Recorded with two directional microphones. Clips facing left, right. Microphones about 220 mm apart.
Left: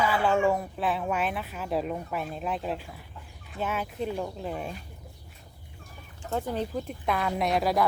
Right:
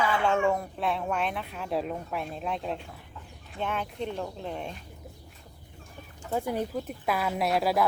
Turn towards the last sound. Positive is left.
turn(degrees=-5)  # may be behind; listen again after turning